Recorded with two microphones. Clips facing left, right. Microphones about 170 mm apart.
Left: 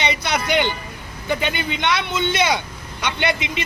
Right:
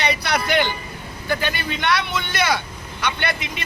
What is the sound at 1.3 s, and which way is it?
A man's voice, 20° left (ahead or behind).